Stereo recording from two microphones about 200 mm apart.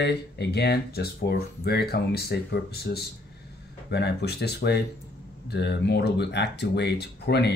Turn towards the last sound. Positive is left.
turn(degrees=55)  # may be behind; listen again after turning